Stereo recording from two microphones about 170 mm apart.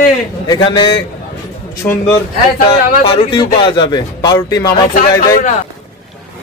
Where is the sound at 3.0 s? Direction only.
35° left (ahead or behind).